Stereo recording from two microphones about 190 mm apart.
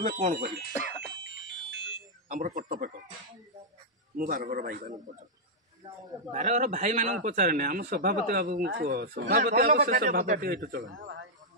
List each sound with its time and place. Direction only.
0.0 s speech: 45° right (ahead or behind)
1.2 s music: 75° right (ahead or behind)
2.2 s speech: 45° right (ahead or behind)
4.2 s speech: 45° right (ahead or behind)
5.8 s a man's voice: 20° right (ahead or behind)
6.3 s speech: 40° right (ahead or behind); by 9.3 s 65° right (ahead or behind)
9.3 s speech: 45° right (ahead or behind)
11.0 s speech: 75° right (ahead or behind)